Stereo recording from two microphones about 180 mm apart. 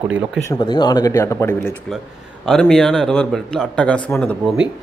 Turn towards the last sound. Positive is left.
turn(degrees=5)  # may be behind; listen again after turning